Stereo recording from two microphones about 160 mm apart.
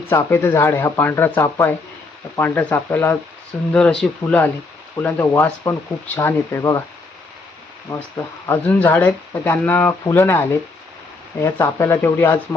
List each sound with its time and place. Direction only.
0.1 s speech: 15° left (ahead or behind)
7.9 s speech: 15° left (ahead or behind)